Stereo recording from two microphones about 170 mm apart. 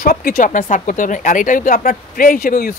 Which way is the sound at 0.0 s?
55° left (ahead or behind).